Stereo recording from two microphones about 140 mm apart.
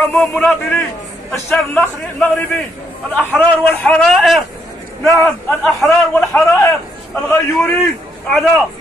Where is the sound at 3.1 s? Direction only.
10° left (ahead or behind).